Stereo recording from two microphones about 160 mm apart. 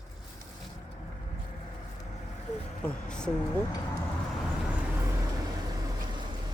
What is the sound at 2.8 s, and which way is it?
Speech, 5° left (ahead or behind).